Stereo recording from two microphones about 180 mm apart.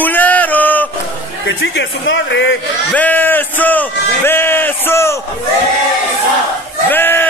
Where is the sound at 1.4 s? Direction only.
85° left.